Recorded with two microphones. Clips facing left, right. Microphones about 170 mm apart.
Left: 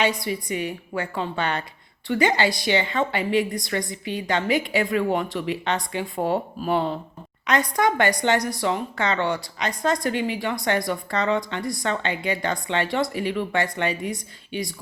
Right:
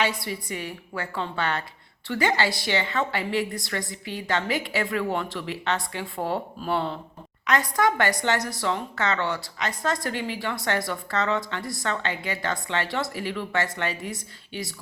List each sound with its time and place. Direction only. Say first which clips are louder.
0.2 s a woman's voice: left 5 dB; 20° left (ahead or behind)